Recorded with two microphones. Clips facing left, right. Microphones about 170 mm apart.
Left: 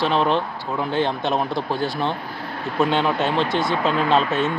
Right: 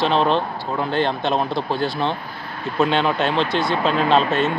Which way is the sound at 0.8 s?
10° left (ahead or behind).